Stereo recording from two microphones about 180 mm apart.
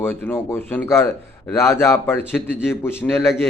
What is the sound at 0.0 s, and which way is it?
A man's voice, 10° left (ahead or behind).